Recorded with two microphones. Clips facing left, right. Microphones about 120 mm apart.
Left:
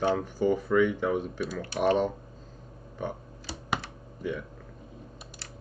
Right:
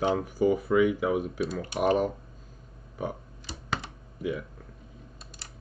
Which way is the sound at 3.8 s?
10° right (ahead or behind).